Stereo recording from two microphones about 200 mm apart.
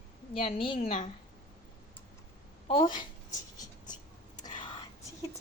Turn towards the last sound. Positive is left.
turn(degrees=20)  # may be behind; listen again after turning